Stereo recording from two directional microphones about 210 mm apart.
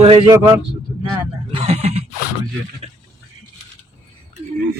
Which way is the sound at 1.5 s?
30° right (ahead or behind).